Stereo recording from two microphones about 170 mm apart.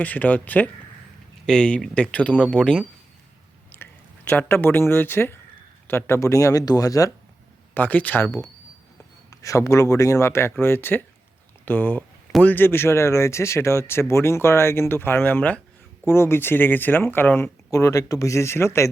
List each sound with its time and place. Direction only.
0.0 s speech: 10° left (ahead or behind)
4.3 s speech: 10° left (ahead or behind)